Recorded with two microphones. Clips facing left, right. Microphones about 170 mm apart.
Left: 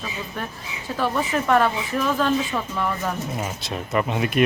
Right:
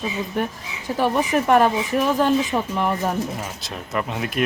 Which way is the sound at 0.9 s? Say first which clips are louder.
Right 4 dB; 15° right (ahead or behind).